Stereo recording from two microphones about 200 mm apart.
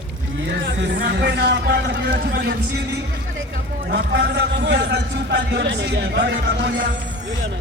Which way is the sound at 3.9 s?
55° right (ahead or behind).